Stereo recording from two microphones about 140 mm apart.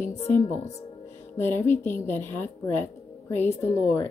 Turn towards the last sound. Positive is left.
turn(degrees=15)  # may be behind; listen again after turning